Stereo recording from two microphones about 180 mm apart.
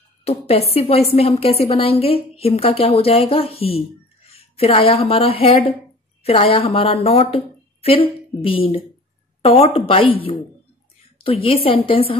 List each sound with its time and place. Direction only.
0.2 s a woman's voice: 35° left (ahead or behind)